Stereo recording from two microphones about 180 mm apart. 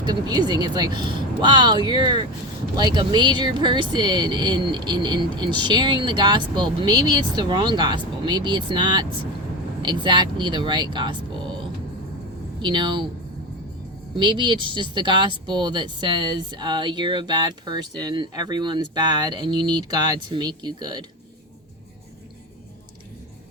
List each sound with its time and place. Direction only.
0.0 s speech: 25° right (ahead or behind)
12.6 s speech: 25° right (ahead or behind)
14.2 s speech: 25° right (ahead or behind)